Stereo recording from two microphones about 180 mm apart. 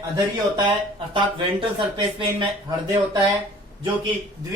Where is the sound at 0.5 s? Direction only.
30° right (ahead or behind).